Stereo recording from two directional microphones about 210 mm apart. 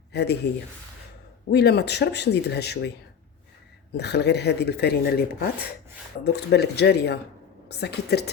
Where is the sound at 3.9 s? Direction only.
50° left (ahead or behind).